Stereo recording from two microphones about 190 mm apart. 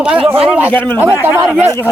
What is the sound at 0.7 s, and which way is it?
Speech, 10° left (ahead or behind).